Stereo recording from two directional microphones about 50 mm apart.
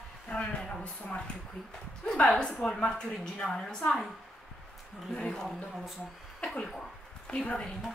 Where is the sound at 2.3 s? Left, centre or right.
Centre.